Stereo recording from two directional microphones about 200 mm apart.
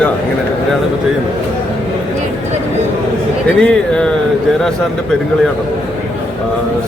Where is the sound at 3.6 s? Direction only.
5° left (ahead or behind).